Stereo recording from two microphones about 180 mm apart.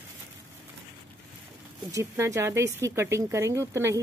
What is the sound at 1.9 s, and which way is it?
Speech, 15° right (ahead or behind).